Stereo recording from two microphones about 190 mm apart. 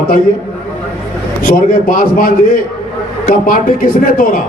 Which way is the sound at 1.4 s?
45° left (ahead or behind).